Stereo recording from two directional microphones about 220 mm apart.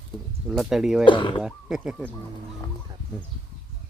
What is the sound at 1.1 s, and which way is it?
Speech, 20° left (ahead or behind).